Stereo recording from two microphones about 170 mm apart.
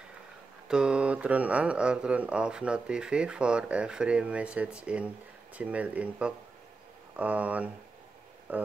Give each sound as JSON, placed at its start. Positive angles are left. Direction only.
{"t": 0.7, "sound": "speech", "side_deg": -5}